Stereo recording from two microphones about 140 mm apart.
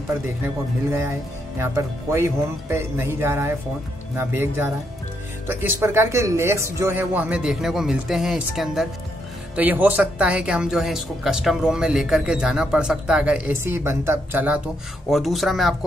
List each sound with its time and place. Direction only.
0.8 s speech: 20° right (ahead or behind); by 8.8 s centre (ahead or behind)
9.6 s speech: 10° right (ahead or behind)
15.0 s speech: centre (ahead or behind)